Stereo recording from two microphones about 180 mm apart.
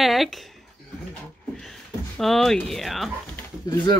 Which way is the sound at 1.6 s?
Centre (ahead or behind).